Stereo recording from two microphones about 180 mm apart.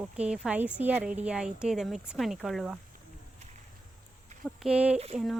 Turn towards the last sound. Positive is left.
turn(degrees=0)  # may be behind; listen again after turning